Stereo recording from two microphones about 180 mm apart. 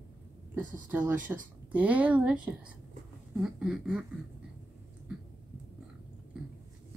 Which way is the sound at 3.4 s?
5° right (ahead or behind).